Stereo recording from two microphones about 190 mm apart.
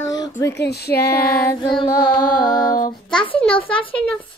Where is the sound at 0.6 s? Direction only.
60° left (ahead or behind).